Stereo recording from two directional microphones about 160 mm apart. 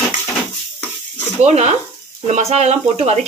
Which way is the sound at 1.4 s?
45° right (ahead or behind).